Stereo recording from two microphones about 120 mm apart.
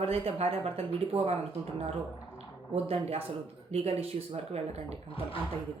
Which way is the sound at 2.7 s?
55° right (ahead or behind).